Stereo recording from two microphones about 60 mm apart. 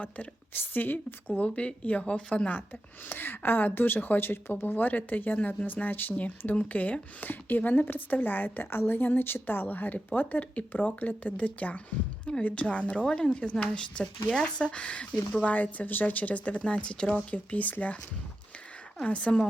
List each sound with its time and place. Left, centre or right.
0.0 s a woman's voice: left
1.4 s speech: left
3.1 s a woman's voice: left
19.0 s speech: left